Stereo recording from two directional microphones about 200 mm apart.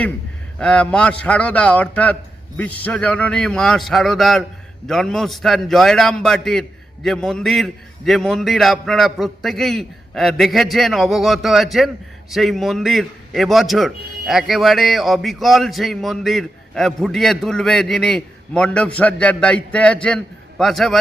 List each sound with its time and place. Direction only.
0.6 s a man's voice: 5° left (ahead or behind)